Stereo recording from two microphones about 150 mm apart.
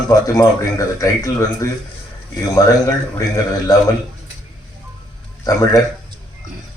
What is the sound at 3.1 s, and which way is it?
Speech, 25° left (ahead or behind).